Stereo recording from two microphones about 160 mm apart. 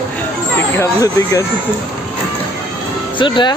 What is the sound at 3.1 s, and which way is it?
Speech, 30° left (ahead or behind).